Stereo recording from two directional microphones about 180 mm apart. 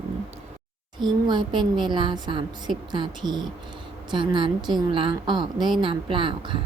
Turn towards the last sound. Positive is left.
turn(degrees=-30)  # may be behind; listen again after turning